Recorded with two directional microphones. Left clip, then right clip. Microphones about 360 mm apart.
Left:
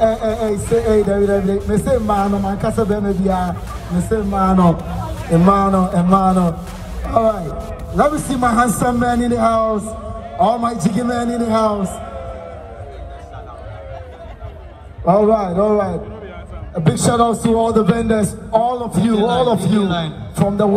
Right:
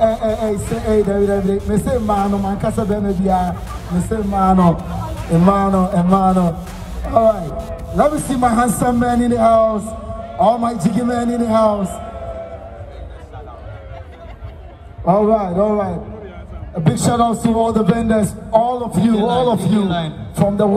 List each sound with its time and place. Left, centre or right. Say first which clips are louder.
0.0 s a man's voice: even; right
15.0 s a man's voice: left 1 dB; right